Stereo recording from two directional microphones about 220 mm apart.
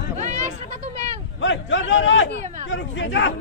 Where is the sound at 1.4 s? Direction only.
55° left (ahead or behind).